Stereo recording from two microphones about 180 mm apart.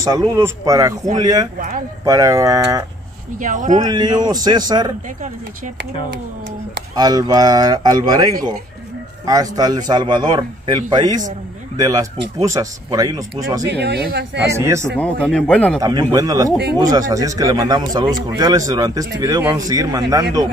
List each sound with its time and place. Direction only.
0.3 s speech: 20° right (ahead or behind)
3.3 s speech: 45° right (ahead or behind)
3.8 s speech: 25° right (ahead or behind)
7.0 s speech: 20° right (ahead or behind)
13.7 s speech: 65° right (ahead or behind)
14.5 s speech: 15° right (ahead or behind)
15.0 s a man's voice: 5° left (ahead or behind)
15.8 s speech: 20° right (ahead or behind)